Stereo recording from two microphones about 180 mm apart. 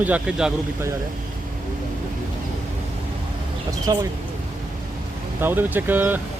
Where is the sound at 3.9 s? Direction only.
20° right (ahead or behind).